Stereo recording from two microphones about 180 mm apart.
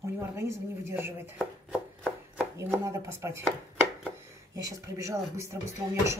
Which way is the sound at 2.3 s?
15° right (ahead or behind).